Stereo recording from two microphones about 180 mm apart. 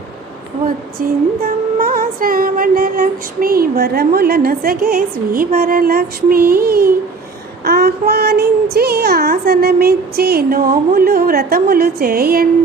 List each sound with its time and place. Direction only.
1.5 s music: 55° right (ahead or behind)
5.5 s a woman's voice: 55° right (ahead or behind)